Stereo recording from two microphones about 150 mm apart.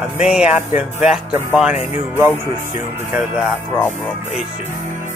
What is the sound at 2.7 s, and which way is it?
Speech, 15° right (ahead or behind).